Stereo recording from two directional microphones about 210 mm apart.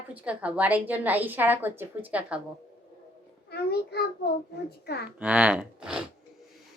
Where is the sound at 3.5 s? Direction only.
50° left (ahead or behind).